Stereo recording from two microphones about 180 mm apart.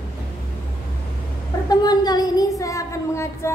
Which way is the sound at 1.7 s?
20° left (ahead or behind).